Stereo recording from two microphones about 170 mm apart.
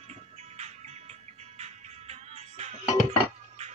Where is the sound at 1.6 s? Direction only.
40° right (ahead or behind).